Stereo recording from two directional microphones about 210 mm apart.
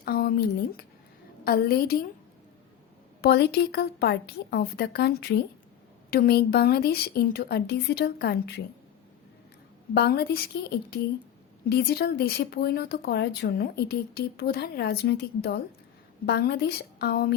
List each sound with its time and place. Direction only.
0.0 s a sound: 45° left (ahead or behind)
1.5 s speech: 45° left (ahead or behind)
3.2 s speech: 50° left (ahead or behind)
9.9 s speech: 50° left (ahead or behind)